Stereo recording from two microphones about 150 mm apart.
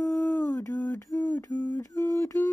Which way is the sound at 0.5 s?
25° left (ahead or behind).